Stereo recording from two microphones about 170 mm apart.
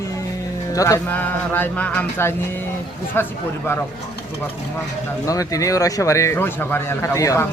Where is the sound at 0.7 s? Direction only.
20° left (ahead or behind).